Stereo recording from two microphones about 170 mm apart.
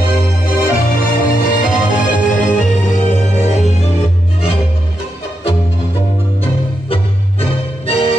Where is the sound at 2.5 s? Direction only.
45° left (ahead or behind).